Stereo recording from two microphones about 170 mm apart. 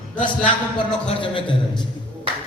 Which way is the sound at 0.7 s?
30° left (ahead or behind).